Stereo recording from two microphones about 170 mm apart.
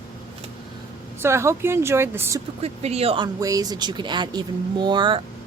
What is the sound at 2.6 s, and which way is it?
Speech, 35° right (ahead or behind).